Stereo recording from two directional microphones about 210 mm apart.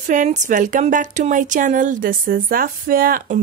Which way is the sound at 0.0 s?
35° right (ahead or behind).